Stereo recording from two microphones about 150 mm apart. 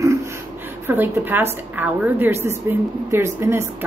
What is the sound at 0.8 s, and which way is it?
A woman's voice, 15° right (ahead or behind).